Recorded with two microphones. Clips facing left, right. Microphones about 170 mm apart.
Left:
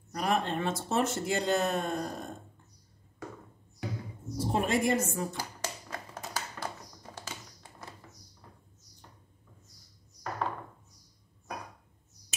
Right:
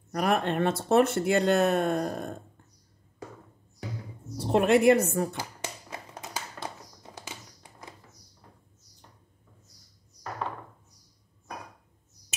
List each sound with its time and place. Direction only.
0.1 s speech: 60° right (ahead or behind)
4.4 s speech: 65° right (ahead or behind)
5.4 s a sound: 20° right (ahead or behind)